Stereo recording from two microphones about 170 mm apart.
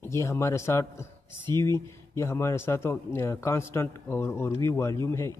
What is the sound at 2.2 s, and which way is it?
Speech, 15° left (ahead or behind).